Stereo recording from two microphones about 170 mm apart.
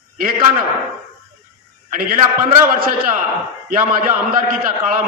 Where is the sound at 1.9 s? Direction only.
55° right (ahead or behind).